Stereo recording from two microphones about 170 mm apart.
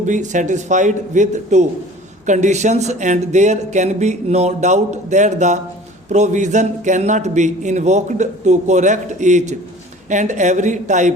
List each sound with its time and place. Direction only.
0.0 s a man's voice: 45° right (ahead or behind)